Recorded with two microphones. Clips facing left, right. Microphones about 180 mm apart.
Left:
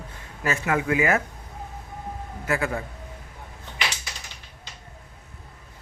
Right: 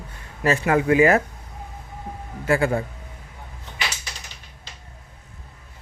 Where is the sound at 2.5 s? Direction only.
30° right (ahead or behind).